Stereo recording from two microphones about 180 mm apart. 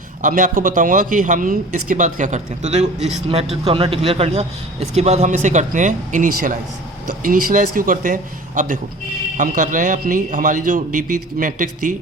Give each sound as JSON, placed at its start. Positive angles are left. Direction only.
{"t": 0.2, "sound": "a man's voice", "side_deg": -45}